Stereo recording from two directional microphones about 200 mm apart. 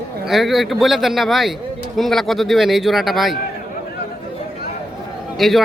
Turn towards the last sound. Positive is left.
turn(degrees=0)  # may be behind; listen again after turning